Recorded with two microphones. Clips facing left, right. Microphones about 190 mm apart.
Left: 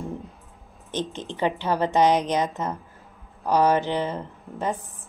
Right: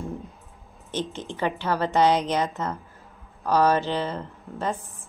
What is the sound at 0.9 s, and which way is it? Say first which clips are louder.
A woman's voice: left 1 dB; 15° left (ahead or behind).